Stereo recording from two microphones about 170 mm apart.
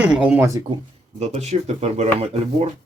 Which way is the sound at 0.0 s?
10° right (ahead or behind).